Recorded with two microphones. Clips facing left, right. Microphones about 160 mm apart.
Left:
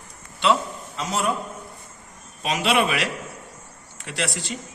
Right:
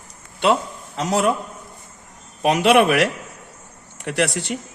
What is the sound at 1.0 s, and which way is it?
Speech, 75° right (ahead or behind).